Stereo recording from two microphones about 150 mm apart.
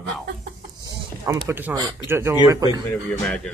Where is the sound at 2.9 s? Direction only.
5° left (ahead or behind).